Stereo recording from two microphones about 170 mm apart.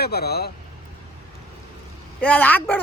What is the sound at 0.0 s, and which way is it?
Speech, 70° left (ahead or behind).